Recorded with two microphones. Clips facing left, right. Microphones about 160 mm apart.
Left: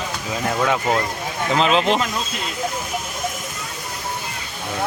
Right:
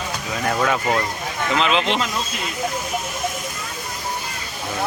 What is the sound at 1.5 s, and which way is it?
Speech, 40° left (ahead or behind).